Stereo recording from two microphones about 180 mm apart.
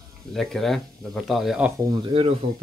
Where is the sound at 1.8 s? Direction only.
20° right (ahead or behind).